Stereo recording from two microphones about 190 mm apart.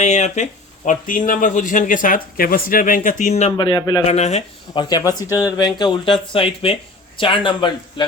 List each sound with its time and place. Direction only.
0.0 s a man's voice: 40° left (ahead or behind); by 4.0 s 20° left (ahead or behind)
4.0 s speech: 35° left (ahead or behind)